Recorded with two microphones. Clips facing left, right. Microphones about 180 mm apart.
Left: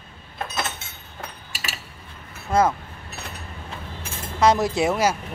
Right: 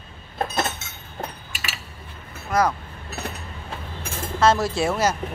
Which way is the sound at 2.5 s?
30° left (ahead or behind).